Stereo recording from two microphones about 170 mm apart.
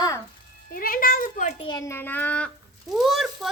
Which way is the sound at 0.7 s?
60° left (ahead or behind).